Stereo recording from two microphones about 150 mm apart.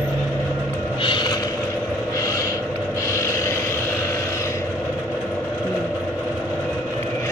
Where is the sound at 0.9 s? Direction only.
30° left (ahead or behind).